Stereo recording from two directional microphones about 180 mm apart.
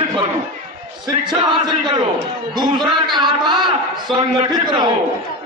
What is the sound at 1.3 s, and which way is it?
Speech, 25° right (ahead or behind).